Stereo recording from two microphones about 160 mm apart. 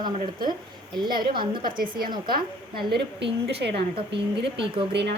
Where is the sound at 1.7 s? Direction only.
60° right (ahead or behind).